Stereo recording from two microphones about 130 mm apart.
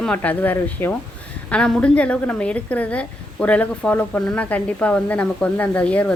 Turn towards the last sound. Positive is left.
turn(degrees=10)  # may be behind; listen again after turning